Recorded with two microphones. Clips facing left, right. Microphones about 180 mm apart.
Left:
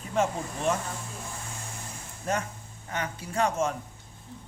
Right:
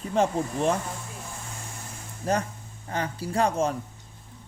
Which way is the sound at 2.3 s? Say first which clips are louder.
Right 4 dB; 35° right (ahead or behind).